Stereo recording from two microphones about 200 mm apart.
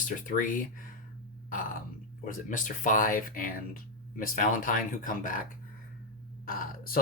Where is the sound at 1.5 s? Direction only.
45° left (ahead or behind).